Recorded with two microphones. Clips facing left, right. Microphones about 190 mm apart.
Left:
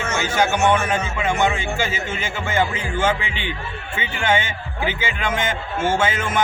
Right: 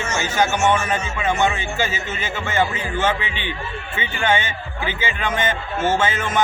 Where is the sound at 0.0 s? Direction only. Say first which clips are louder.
Left 1 dB; 55° left (ahead or behind).